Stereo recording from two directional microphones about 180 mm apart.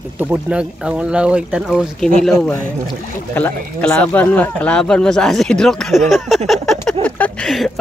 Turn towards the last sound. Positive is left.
turn(degrees=0)  # may be behind; listen again after turning